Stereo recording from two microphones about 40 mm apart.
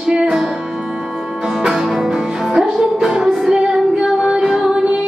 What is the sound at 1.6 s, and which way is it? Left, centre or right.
Music, centre.